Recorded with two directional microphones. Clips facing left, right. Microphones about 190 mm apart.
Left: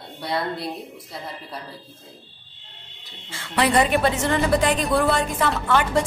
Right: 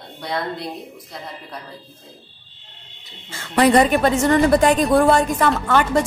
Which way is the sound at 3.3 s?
45° right (ahead or behind).